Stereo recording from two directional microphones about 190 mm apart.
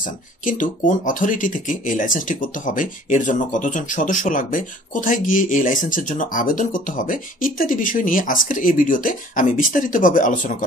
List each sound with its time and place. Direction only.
0.0 s speech: 45° left (ahead or behind)